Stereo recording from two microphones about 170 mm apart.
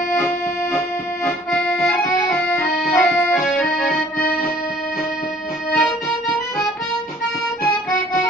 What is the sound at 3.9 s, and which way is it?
Accordion, 55° left (ahead or behind).